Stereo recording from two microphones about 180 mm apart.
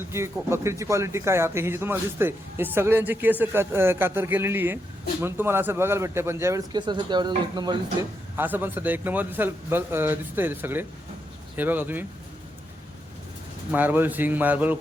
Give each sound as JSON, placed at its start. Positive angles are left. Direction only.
{"t": 0.1, "sound": "speech", "side_deg": -15}
{"t": 8.4, "sound": "speech", "side_deg": -10}
{"t": 13.7, "sound": "speech", "side_deg": -10}